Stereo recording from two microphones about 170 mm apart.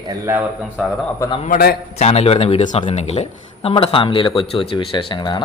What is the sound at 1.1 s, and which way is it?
Speech, 20° left (ahead or behind).